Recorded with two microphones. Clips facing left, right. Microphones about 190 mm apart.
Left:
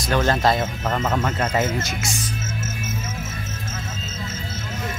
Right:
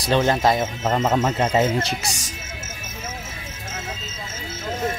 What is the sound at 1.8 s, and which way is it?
Speech, 35° right (ahead or behind).